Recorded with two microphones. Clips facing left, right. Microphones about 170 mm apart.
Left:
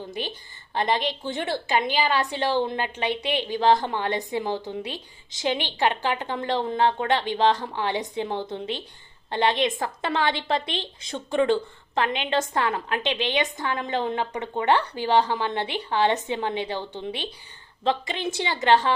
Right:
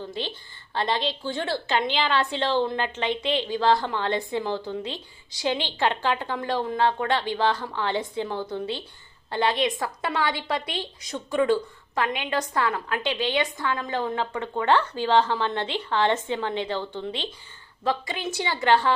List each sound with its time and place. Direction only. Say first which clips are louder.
0.1 s a woman's voice: even; 15° left (ahead or behind)